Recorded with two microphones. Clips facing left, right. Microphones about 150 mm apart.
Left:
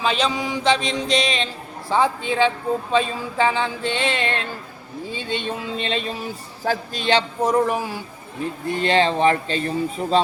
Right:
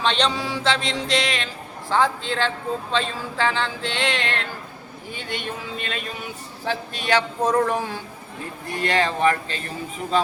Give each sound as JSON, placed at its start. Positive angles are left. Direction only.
{"t": 0.0, "sound": "speech", "side_deg": 5}
{"t": 0.3, "sound": "speech", "side_deg": 15}
{"t": 3.9, "sound": "a sound", "side_deg": -90}
{"t": 5.5, "sound": "speech", "side_deg": 25}
{"t": 7.1, "sound": "speech", "side_deg": 15}
{"t": 8.7, "sound": "speech", "side_deg": 30}